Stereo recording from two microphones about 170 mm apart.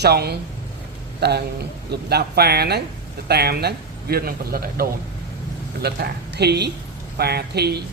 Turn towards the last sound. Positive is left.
turn(degrees=-70)  # may be behind; listen again after turning